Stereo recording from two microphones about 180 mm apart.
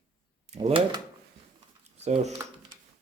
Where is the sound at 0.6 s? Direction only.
25° right (ahead or behind).